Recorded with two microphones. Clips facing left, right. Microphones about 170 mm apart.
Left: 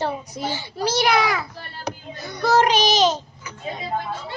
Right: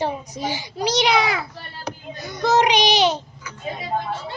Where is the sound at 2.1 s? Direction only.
20° right (ahead or behind).